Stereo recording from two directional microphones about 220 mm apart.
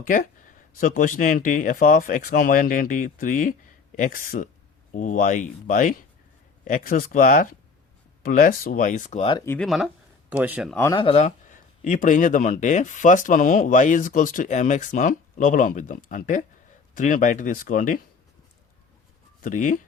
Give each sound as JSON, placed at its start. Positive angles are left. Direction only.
{"t": 0.0, "sound": "speech", "side_deg": 35}
{"t": 9.5, "sound": "speech", "side_deg": 0}
{"t": 10.9, "sound": "speech", "side_deg": 25}
{"t": 19.4, "sound": "speech", "side_deg": 35}